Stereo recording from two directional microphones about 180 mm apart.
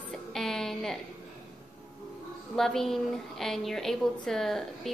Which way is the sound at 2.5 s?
Centre (ahead or behind).